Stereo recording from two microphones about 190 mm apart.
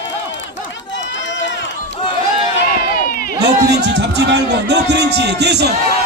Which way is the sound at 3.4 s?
65° right (ahead or behind).